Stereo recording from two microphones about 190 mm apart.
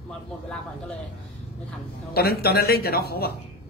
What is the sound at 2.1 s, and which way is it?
A man's voice, 55° left (ahead or behind).